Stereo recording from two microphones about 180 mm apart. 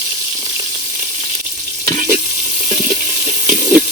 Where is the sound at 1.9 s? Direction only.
45° right (ahead or behind).